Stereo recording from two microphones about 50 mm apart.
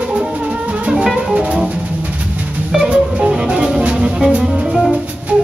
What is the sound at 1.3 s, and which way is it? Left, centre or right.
Music, right.